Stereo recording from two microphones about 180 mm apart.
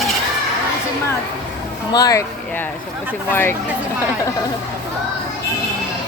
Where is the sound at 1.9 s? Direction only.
20° left (ahead or behind).